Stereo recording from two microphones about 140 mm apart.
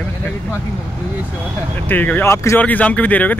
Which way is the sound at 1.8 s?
15° left (ahead or behind).